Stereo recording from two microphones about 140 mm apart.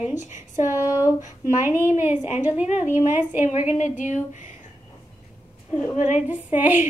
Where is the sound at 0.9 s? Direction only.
25° left (ahead or behind).